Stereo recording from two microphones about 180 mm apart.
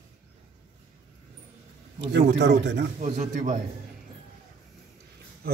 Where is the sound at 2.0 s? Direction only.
75° right (ahead or behind).